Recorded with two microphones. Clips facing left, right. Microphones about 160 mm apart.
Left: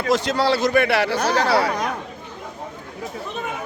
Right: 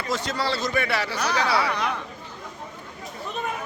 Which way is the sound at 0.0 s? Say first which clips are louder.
Left 7 dB; 80° left.